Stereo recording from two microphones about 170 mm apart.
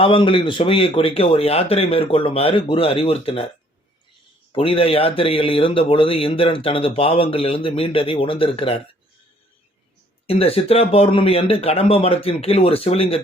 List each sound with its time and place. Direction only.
0.0 s speech: 30° left (ahead or behind)
4.5 s speech: 35° left (ahead or behind)
10.2 s speech: 35° left (ahead or behind)